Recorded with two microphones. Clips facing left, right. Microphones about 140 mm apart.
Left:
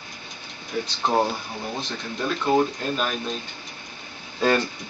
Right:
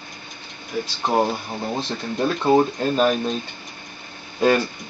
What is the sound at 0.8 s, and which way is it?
Speech, 5° right (ahead or behind).